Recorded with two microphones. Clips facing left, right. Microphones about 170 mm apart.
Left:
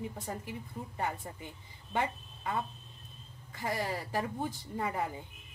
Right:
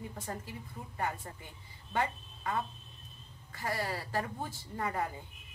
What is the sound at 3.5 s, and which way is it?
A woman's voice, 20° left (ahead or behind).